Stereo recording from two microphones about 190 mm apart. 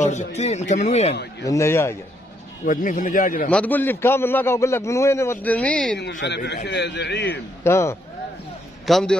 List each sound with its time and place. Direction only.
0.0 s speech: 40° left (ahead or behind)
1.4 s a man's voice: 15° left (ahead or behind)
2.6 s a man's voice: 45° left (ahead or behind)
3.4 s a man's voice: 10° left (ahead or behind)
6.2 s a man's voice: 65° left (ahead or behind)
7.6 s a man's voice: 15° left (ahead or behind)
8.8 s a man's voice: 5° left (ahead or behind)